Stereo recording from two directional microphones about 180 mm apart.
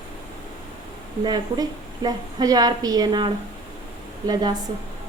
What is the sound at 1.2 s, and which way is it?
A woman's voice, 25° right (ahead or behind).